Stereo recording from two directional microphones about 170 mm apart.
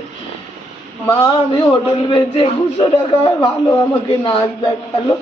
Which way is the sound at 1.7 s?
30° left (ahead or behind).